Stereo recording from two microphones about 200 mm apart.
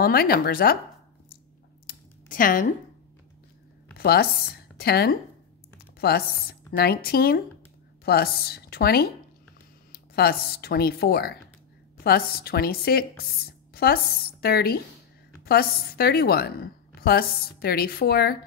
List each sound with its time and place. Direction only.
0.0 s speech: 50° left (ahead or behind)
1.9 s a sound: 45° left (ahead or behind)
4.0 s speech: 50° left (ahead or behind)
14.4 s speech: 50° left (ahead or behind)